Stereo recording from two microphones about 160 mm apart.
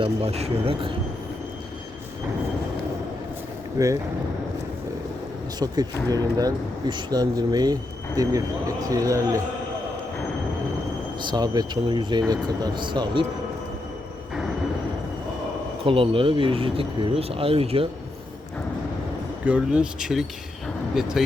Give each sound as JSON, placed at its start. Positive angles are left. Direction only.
{"t": 0.0, "sound": "speech", "side_deg": -40}
{"t": 3.8, "sound": "speech", "side_deg": -20}
{"t": 5.5, "sound": "speech", "side_deg": -25}
{"t": 11.2, "sound": "speech", "side_deg": -25}
{"t": 15.8, "sound": "speech", "side_deg": -35}
{"t": 19.5, "sound": "speech", "side_deg": -5}